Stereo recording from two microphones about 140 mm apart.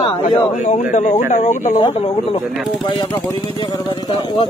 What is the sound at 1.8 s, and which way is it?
Speech, 45° left (ahead or behind).